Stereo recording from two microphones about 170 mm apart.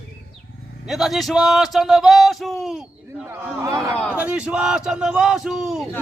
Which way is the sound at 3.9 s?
10° left (ahead or behind).